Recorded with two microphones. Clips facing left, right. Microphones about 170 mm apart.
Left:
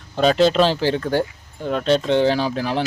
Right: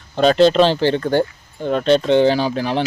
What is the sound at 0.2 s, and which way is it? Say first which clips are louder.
Speech: right 3 dB; 5° left (ahead or behind).